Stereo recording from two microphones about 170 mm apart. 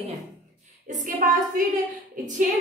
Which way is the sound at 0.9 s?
50° right (ahead or behind).